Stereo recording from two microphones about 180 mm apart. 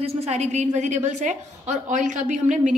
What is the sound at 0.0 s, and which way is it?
A woman's voice, 35° right (ahead or behind).